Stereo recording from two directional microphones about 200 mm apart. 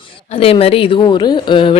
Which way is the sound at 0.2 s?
30° left (ahead or behind).